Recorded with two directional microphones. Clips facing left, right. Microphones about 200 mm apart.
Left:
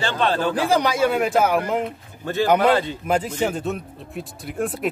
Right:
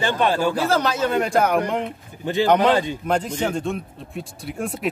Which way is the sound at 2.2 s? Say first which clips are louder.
Right 1 dB; 15° right (ahead or behind).